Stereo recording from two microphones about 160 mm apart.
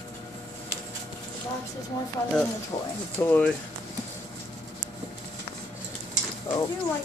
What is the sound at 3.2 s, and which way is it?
Speech, 10° left (ahead or behind).